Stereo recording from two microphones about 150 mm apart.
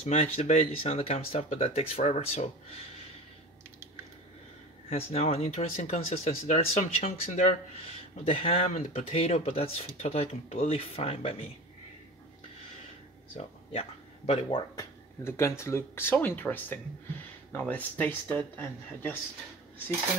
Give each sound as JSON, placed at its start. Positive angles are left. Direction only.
{"t": 0.0, "sound": "speech", "side_deg": 40}
{"t": 4.8, "sound": "speech", "side_deg": 40}
{"t": 13.7, "sound": "speech", "side_deg": 40}
{"t": 14.8, "sound": "speech", "side_deg": 20}